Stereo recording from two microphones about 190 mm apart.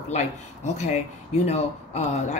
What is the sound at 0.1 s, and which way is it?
Speech, 35° left (ahead or behind).